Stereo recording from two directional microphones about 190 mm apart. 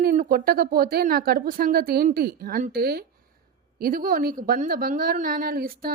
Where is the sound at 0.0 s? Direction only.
50° right (ahead or behind).